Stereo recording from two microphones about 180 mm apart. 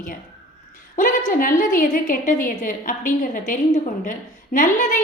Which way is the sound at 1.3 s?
50° left (ahead or behind).